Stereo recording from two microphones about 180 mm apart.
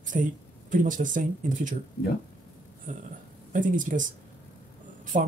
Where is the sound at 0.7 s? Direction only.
45° right (ahead or behind).